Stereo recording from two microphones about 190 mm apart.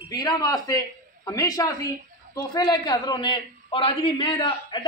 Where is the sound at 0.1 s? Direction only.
20° left (ahead or behind).